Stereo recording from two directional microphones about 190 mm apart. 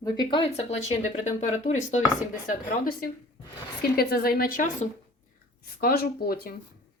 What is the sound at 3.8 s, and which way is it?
A woman's voice, 55° left (ahead or behind).